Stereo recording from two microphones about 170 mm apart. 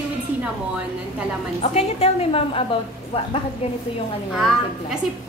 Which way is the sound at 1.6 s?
35° left (ahead or behind).